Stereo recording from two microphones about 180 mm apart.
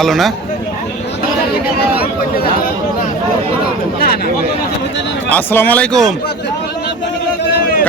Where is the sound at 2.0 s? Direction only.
55° left (ahead or behind).